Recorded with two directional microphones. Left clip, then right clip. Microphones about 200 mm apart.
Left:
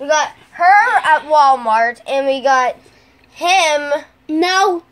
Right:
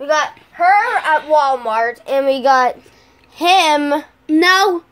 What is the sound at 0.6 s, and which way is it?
A child's voice, 30° right (ahead or behind).